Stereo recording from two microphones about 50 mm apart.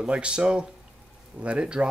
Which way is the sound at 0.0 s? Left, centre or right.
Right.